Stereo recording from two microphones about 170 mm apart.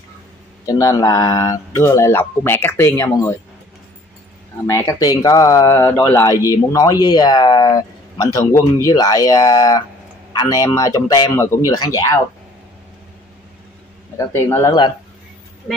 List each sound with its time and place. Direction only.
0.7 s speech: 20° left (ahead or behind)
4.6 s speech: 20° left (ahead or behind)
5.9 s speech: 10° left (ahead or behind)
6.2 s speech: 20° left (ahead or behind)
14.1 s speech: 15° left (ahead or behind)